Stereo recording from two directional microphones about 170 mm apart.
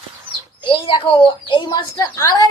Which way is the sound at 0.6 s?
30° left (ahead or behind).